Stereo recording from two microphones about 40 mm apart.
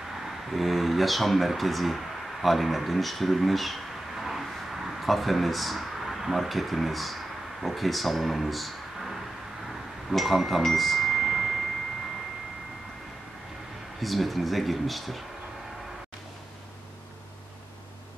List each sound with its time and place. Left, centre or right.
0.5 s speech: centre
2.4 s a sound: centre
6.2 s speech: centre
10.1 s speech: centre
14.0 s speech: centre